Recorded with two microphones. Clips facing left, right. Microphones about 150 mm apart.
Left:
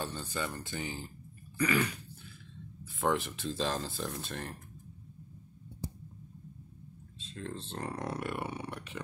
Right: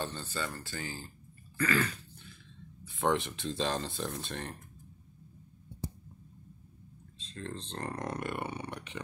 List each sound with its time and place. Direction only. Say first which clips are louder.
0.0 s speech: even; 10° left (ahead or behind)
2.8 s speech: right 1 dB; centre (ahead or behind)
7.2 s speech: even; 5° left (ahead or behind)